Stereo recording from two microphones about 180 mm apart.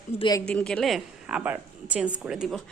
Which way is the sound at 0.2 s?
20° left (ahead or behind).